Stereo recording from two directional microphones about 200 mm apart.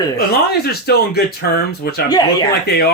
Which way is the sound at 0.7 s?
50° left (ahead or behind).